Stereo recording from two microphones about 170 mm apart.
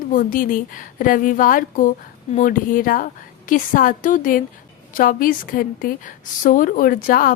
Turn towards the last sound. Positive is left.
turn(degrees=55)  # may be behind; listen again after turning